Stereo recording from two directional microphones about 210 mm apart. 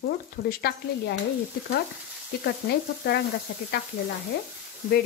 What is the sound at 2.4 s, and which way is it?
Speech, 50° left (ahead or behind).